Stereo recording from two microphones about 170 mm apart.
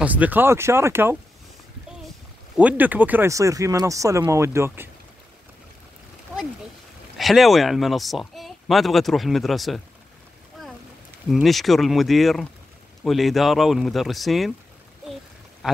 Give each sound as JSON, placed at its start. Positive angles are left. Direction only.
{"t": 0.0, "sound": "speech", "side_deg": -10}
{"t": 2.5, "sound": "speech", "side_deg": -10}
{"t": 6.3, "sound": "a sound", "side_deg": -5}
{"t": 7.2, "sound": "speech", "side_deg": 0}
{"t": 11.2, "sound": "speech", "side_deg": 0}
{"t": 15.6, "sound": "a sound", "side_deg": 0}